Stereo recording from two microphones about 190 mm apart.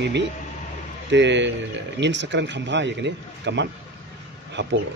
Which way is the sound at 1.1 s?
65° right (ahead or behind).